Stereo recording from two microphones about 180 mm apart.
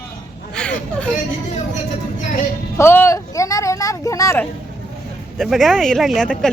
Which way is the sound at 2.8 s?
15° left (ahead or behind).